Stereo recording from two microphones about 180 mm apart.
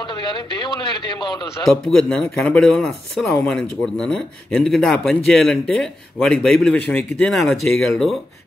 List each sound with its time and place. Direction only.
0.0 s a man's voice: 25° left (ahead or behind)
1.9 s speech: 5° left (ahead or behind)